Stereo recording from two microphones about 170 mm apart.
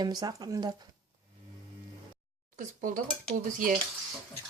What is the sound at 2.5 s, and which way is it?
Speech, 50° right (ahead or behind).